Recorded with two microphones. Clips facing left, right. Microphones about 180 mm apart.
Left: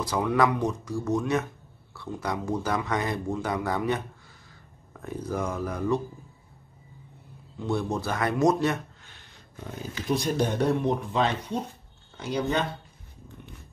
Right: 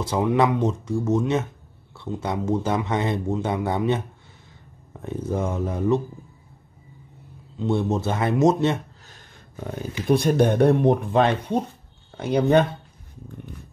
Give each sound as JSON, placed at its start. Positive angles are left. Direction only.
{"t": 0.0, "sound": "speech", "side_deg": -25}
{"t": 7.5, "sound": "speech", "side_deg": -20}
{"t": 10.0, "sound": "speech", "side_deg": -55}